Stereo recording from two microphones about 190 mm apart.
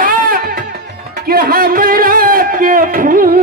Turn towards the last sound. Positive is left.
turn(degrees=-45)  # may be behind; listen again after turning